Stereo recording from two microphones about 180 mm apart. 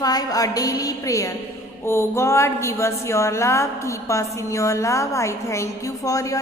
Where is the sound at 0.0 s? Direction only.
20° left (ahead or behind).